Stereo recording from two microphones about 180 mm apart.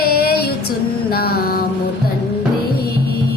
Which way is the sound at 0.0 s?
60° left (ahead or behind).